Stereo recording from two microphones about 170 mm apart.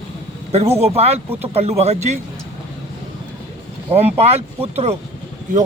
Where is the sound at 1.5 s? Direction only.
40° right (ahead or behind).